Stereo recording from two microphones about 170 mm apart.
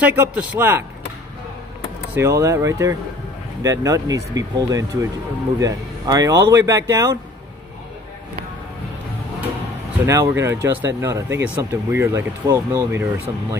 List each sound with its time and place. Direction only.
0.0 s speech: 10° right (ahead or behind)
2.1 s speech: 15° right (ahead or behind)
10.0 s speech: 15° right (ahead or behind)